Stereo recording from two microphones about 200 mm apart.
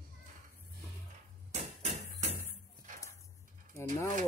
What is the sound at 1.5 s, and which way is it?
Music, 35° right (ahead or behind).